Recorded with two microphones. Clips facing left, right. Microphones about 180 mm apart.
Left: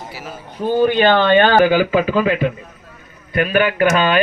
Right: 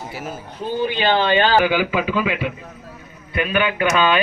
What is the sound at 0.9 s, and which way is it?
Speech, 50° left (ahead or behind).